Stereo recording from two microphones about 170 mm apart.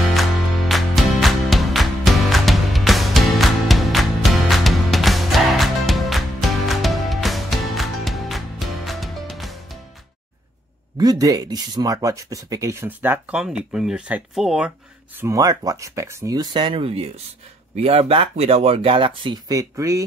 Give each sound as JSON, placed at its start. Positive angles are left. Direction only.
{"t": 0.0, "sound": "music", "side_deg": 0}
{"t": 11.0, "sound": "speech", "side_deg": -20}
{"t": 15.1, "sound": "speech", "side_deg": -20}